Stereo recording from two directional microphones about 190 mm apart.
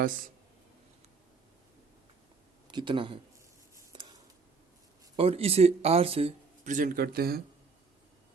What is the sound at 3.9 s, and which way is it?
Scissors, 25° right (ahead or behind).